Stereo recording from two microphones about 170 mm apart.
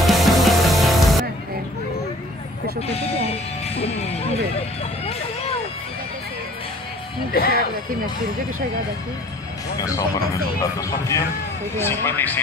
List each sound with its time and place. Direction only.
0.0 s music: centre (ahead or behind)
2.9 s speech: 35° left (ahead or behind)
7.3 s speech: 65° left (ahead or behind)
9.8 s a man's voice: 20° left (ahead or behind)